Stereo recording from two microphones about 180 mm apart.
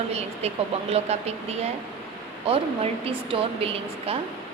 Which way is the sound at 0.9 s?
35° right (ahead or behind).